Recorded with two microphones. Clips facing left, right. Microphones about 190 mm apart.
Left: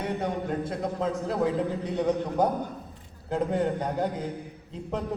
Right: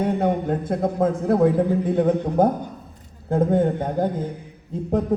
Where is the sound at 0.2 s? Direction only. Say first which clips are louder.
Right 7 dB; 50° right (ahead or behind).